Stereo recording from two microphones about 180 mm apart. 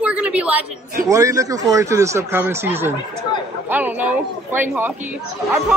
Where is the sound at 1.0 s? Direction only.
20° right (ahead or behind).